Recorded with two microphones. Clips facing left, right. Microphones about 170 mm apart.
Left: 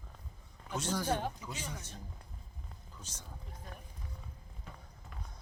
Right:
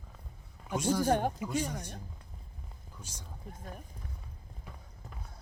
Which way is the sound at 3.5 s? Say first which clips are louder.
Right 5 dB; 50° right (ahead or behind).